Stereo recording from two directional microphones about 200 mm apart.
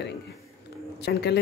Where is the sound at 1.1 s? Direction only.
55° left (ahead or behind).